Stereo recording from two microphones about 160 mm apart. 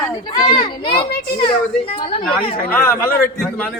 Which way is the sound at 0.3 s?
30° left (ahead or behind).